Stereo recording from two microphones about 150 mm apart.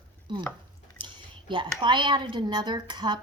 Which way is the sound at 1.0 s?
30° right (ahead or behind).